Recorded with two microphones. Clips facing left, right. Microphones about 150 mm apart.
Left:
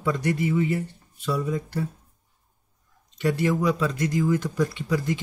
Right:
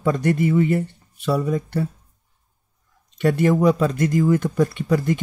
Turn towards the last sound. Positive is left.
turn(degrees=-55)  # may be behind; listen again after turning